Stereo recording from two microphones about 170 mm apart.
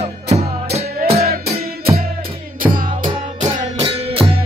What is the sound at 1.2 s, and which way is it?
Music, 65° right (ahead or behind).